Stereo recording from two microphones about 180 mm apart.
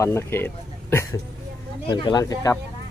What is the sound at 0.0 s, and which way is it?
Speech, 15° left (ahead or behind).